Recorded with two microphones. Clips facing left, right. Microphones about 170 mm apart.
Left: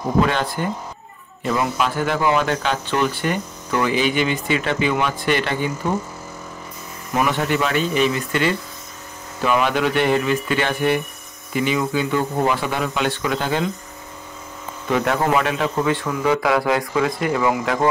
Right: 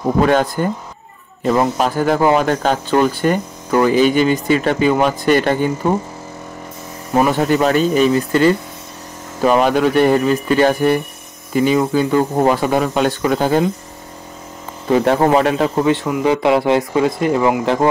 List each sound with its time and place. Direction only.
0.3 s speech: 45° right (ahead or behind)
7.2 s speech: 40° right (ahead or behind)
14.9 s speech: 35° right (ahead or behind)